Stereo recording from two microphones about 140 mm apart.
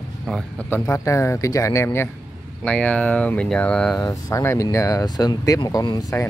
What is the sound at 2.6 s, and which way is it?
Speech, 10° left (ahead or behind).